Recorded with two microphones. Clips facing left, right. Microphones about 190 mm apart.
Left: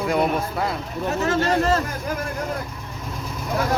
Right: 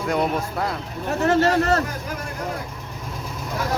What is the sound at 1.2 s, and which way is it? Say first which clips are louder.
Speech: right 3 dB; 65° right (ahead or behind).